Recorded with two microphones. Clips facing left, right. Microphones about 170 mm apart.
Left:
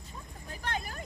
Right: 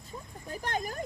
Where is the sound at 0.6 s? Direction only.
45° right (ahead or behind).